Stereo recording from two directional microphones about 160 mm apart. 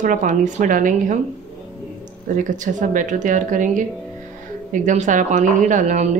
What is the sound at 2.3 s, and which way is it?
Speech, 55° right (ahead or behind).